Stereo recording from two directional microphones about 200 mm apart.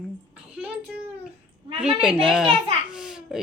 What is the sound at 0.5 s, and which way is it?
Speech, 5° right (ahead or behind).